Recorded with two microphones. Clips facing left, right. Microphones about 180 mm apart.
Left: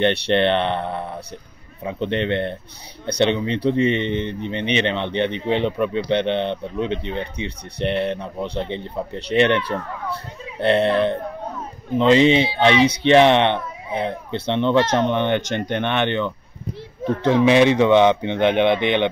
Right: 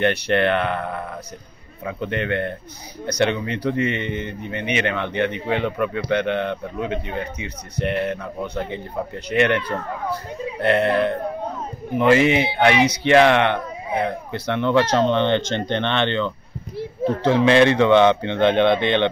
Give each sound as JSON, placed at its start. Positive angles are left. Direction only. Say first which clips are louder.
{"t": 0.0, "sound": "a man's voice", "louder": "left 1 dB", "side_deg": 25}
{"t": 10.6, "sound": "a man's voice", "louder": "left 1 dB", "side_deg": 25}
{"t": 12.0, "sound": "a man's voice", "louder": "left 2 dB", "side_deg": 20}
{"t": 17.5, "sound": "speech", "louder": "even", "side_deg": 15}